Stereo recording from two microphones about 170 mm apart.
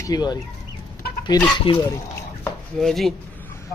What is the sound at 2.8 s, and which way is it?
Speech, centre (ahead or behind).